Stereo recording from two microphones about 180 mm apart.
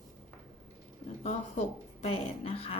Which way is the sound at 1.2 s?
35° left (ahead or behind).